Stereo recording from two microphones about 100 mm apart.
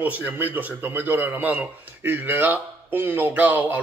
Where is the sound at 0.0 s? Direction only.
20° right (ahead or behind).